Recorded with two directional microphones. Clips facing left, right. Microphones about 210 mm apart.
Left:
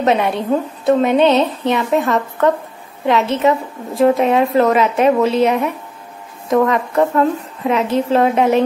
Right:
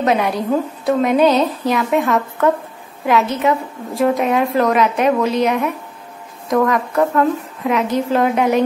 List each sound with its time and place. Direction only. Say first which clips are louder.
0.0 s a woman's voice: left 1 dB; centre (ahead or behind)
5.0 s a woman's voice: left 5 dB; 30° left (ahead or behind)
6.5 s a woman's voice: left 2 dB; centre (ahead or behind)